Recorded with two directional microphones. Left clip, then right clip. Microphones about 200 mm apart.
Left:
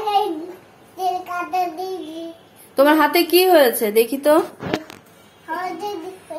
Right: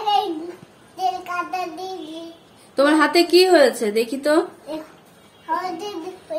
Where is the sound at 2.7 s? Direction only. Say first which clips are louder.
Left 2 dB; centre (ahead or behind).